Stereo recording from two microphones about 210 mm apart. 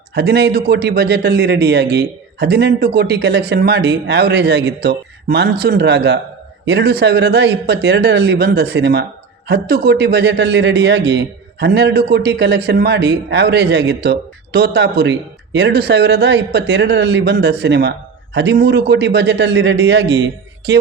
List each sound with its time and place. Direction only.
0.1 s speech: 50° right (ahead or behind)